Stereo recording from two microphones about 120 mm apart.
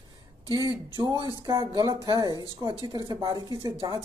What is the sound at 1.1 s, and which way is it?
Speech, 35° left (ahead or behind).